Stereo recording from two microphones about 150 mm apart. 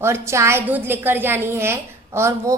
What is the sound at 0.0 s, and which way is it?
A woman's voice, 20° right (ahead or behind).